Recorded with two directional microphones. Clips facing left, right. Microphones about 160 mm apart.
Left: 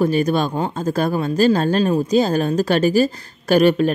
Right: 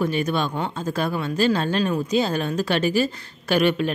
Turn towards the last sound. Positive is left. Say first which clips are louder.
# left 6 dB
turn(degrees=40)  # may be behind; listen again after turning